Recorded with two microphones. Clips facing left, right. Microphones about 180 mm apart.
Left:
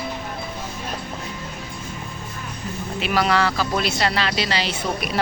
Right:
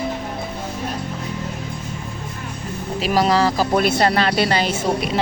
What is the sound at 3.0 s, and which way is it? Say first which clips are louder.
Speech: right 3 dB; 35° right (ahead or behind).